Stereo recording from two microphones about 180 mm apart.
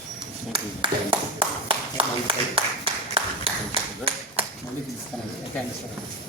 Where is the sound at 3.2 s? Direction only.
30° right (ahead or behind).